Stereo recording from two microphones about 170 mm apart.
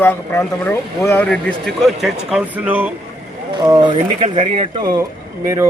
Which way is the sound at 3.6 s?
25° right (ahead or behind).